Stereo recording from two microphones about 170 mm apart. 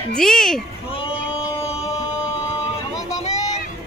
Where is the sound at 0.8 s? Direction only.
30° left (ahead or behind).